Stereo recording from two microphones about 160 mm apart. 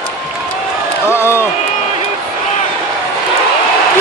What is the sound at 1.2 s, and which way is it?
Crowd, 15° left (ahead or behind).